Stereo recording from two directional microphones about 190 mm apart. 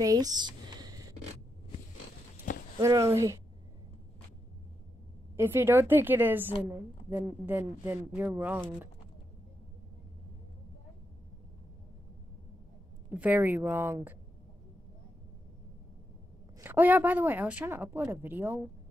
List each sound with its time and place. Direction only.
0.0 s a sound: 20° right (ahead or behind)
2.5 s a sound: 45° left (ahead or behind)
2.8 s a woman's voice: 15° right (ahead or behind)
5.3 s a woman's voice: 10° right (ahead or behind)
13.1 s a woman's voice: 10° right (ahead or behind)
16.5 s a woman's voice: 10° right (ahead or behind)